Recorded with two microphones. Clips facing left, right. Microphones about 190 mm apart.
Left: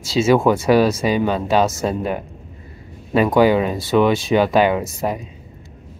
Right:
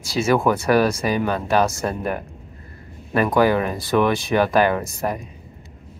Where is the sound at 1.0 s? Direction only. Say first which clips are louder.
Left 3 dB; 20° left (ahead or behind).